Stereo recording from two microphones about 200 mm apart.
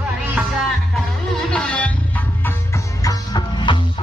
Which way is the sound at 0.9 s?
Centre (ahead or behind).